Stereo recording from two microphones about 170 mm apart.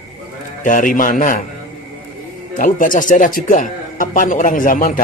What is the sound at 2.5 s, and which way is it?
A man's voice, 50° left (ahead or behind).